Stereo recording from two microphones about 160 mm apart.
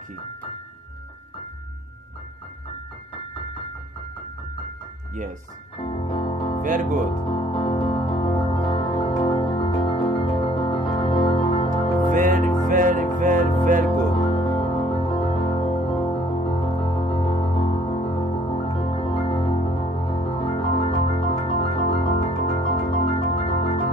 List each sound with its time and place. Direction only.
5.8 s music: 35° left (ahead or behind)
6.6 s speech: 55° right (ahead or behind)
7.2 s music: 35° left (ahead or behind)
12.1 s music: 55° right (ahead or behind)
14.1 s music: 35° left (ahead or behind)